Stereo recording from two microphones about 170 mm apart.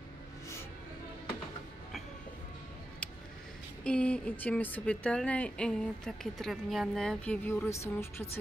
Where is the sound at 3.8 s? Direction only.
5° left (ahead or behind).